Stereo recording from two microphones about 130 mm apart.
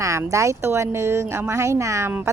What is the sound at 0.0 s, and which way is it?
A woman's voice, 25° right (ahead or behind).